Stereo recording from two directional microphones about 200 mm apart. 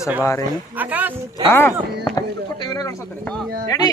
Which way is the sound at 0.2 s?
15° left (ahead or behind).